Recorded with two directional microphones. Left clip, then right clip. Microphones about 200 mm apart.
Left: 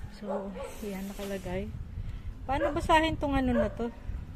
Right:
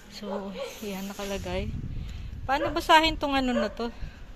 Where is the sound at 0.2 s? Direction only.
10° right (ahead or behind).